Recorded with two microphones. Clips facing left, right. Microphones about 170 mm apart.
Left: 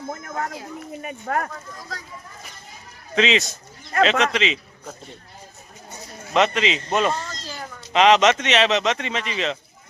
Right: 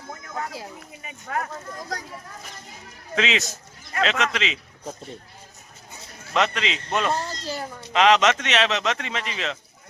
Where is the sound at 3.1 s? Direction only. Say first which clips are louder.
Left 4 dB; 5° right (ahead or behind).